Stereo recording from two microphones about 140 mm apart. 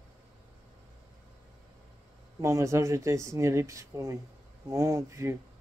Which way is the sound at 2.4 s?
20° right (ahead or behind).